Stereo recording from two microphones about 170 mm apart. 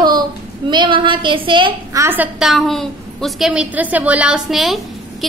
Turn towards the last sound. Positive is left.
turn(degrees=0)  # may be behind; listen again after turning